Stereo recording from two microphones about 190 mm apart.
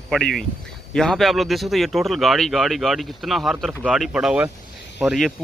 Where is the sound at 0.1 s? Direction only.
Centre (ahead or behind).